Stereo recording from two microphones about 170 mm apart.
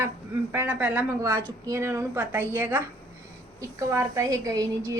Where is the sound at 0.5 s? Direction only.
10° right (ahead or behind).